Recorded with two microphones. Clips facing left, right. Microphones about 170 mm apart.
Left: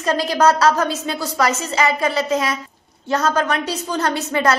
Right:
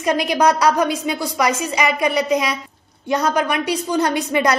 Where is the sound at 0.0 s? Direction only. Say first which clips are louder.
Even; 15° right (ahead or behind).